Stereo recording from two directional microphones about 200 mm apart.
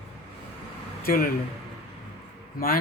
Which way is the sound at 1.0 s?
45° left (ahead or behind).